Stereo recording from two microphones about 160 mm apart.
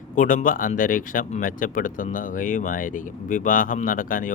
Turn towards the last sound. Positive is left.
turn(degrees=60)  # may be behind; listen again after turning